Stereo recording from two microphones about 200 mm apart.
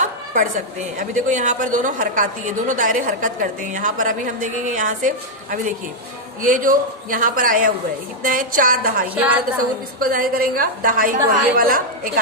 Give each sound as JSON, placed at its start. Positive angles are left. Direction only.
{"t": 0.0, "sound": "a woman's voice", "side_deg": -40}
{"t": 9.0, "sound": "a woman's voice", "side_deg": -5}
{"t": 10.0, "sound": "a woman's voice", "side_deg": -45}